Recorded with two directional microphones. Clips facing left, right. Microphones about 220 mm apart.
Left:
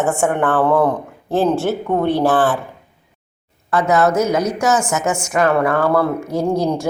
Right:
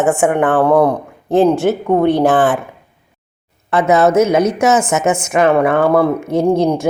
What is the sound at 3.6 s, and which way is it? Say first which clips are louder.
A woman's voice: right 3 dB; 20° right (ahead or behind).